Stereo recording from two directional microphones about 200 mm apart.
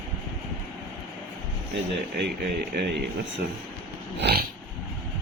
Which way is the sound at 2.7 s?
55° right (ahead or behind).